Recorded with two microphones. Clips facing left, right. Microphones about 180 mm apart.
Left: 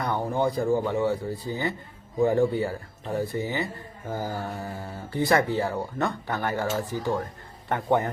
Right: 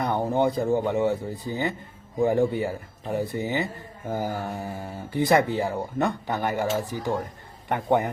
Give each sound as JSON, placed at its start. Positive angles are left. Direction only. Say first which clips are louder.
{"t": 0.0, "sound": "speech", "louder": "right 2 dB", "side_deg": -20}